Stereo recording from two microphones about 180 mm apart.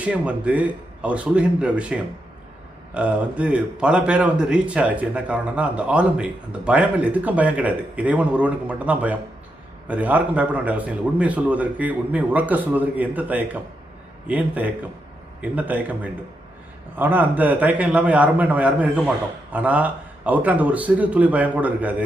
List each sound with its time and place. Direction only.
0.0 s a man's voice: 5° right (ahead or behind)